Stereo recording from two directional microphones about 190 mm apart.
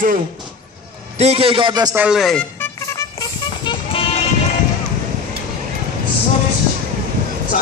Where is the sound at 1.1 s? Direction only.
35° right (ahead or behind).